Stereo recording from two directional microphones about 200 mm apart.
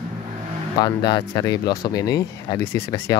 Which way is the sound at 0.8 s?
20° left (ahead or behind).